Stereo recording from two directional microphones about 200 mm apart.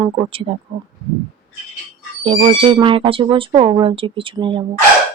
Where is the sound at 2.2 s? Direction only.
30° right (ahead or behind).